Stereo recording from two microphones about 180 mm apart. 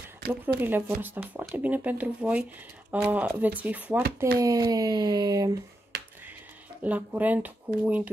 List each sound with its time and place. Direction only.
0.6 s speech: 10° right (ahead or behind)
4.4 s speech: 20° right (ahead or behind)
6.8 s speech: 10° right (ahead or behind)